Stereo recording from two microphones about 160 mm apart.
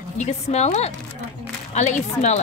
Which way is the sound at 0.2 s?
45° left (ahead or behind).